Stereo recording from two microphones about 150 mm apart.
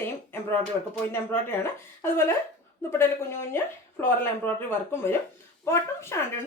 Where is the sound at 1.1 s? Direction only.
15° left (ahead or behind).